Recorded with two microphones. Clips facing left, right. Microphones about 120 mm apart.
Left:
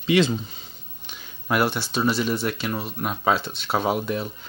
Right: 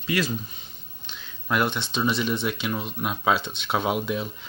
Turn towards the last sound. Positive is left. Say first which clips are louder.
# left 2 dB
turn(degrees=-5)  # may be behind; listen again after turning